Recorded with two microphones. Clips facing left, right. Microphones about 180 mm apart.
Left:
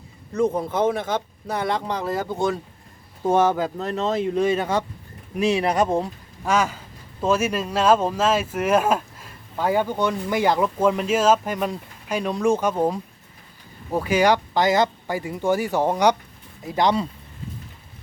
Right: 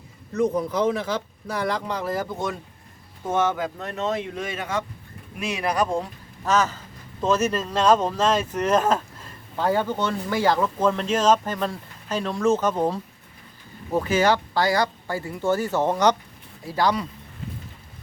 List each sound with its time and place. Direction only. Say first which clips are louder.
0.5 s speech: left 1 dB; 55° left (ahead or behind)
1.6 s speech: left 1 dB; 25° left (ahead or behind)
6.4 s speech: even; 10° left (ahead or behind)